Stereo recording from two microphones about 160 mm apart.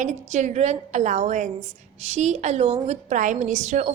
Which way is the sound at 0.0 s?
50° right (ahead or behind).